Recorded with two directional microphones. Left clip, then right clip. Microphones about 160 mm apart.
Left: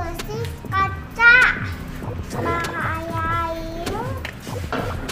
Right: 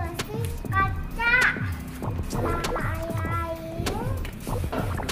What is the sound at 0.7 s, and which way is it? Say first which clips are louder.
Child singing: left 4 dB; 10° left (ahead or behind).